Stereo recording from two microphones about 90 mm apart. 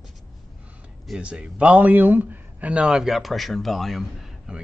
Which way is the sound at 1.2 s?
10° right (ahead or behind).